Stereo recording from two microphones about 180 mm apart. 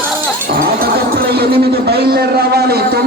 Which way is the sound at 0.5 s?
55° right (ahead or behind).